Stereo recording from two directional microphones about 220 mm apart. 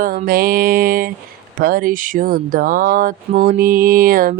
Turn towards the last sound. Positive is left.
turn(degrees=-40)  # may be behind; listen again after turning